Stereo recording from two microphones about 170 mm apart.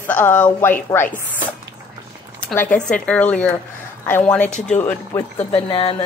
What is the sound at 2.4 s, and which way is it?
Zipper, 10° left (ahead or behind).